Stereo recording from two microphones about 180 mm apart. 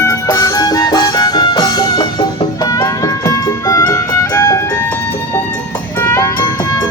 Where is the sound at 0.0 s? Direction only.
15° left (ahead or behind).